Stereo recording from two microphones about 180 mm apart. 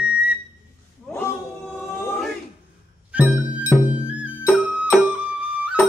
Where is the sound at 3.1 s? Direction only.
10° right (ahead or behind).